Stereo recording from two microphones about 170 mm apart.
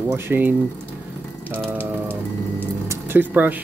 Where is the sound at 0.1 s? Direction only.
10° right (ahead or behind).